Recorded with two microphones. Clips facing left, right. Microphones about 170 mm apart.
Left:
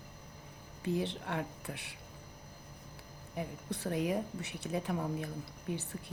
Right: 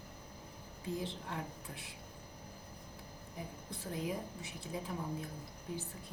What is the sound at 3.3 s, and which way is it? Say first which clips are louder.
A woman's voice: left 8 dB; 70° left (ahead or behind).